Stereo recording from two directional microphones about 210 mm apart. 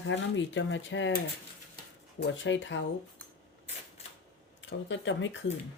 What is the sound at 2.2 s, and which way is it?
Speech, 60° left (ahead or behind).